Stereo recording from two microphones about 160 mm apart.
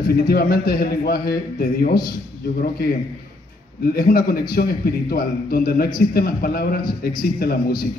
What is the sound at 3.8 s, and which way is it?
A man's voice, 65° left (ahead or behind).